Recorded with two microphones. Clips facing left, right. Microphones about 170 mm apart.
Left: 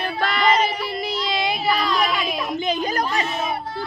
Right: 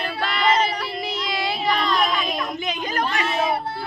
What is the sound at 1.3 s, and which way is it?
Child singing, 20° left (ahead or behind).